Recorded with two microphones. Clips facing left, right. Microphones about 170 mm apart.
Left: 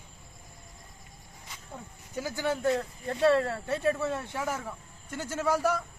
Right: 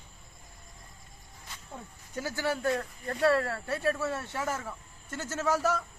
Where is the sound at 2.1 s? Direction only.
15° left (ahead or behind).